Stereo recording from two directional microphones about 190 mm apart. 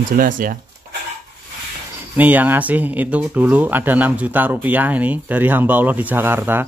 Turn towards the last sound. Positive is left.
turn(degrees=-10)  # may be behind; listen again after turning